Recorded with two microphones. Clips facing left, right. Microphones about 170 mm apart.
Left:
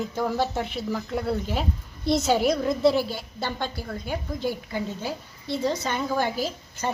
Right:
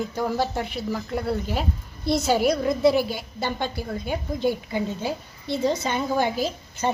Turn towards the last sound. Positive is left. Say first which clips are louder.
# right 3 dB
turn(degrees=-20)  # may be behind; listen again after turning